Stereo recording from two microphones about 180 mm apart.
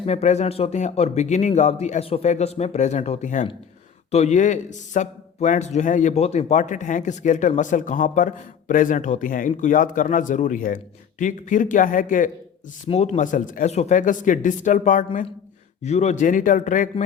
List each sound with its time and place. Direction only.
0.0 s speech: 35° left (ahead or behind)